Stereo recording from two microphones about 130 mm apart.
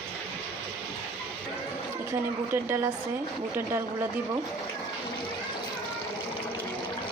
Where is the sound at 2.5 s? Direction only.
20° right (ahead or behind).